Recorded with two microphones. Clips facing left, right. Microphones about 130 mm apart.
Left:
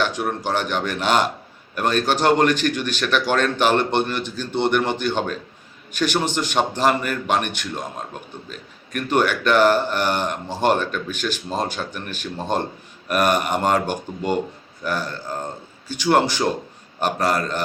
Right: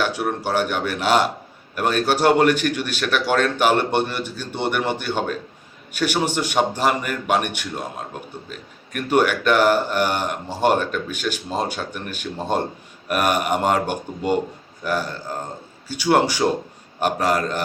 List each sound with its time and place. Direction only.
0.0 s speech: 10° right (ahead or behind)